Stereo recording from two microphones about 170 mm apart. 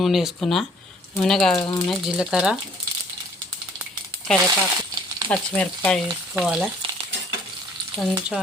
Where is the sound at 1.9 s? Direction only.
Centre (ahead or behind).